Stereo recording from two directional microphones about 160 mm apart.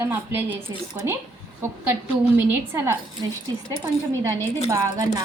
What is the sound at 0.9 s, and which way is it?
A woman's voice, 25° right (ahead or behind).